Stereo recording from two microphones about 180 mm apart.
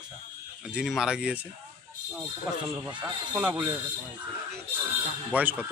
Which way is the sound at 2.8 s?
25° right (ahead or behind).